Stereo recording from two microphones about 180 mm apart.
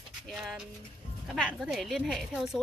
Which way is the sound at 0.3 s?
5° right (ahead or behind).